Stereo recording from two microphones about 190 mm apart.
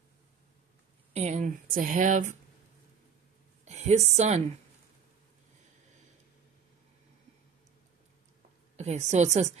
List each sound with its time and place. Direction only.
1.1 s speech: 40° right (ahead or behind)
3.6 s a woman's voice: 35° right (ahead or behind)
8.7 s a woman's voice: 35° right (ahead or behind)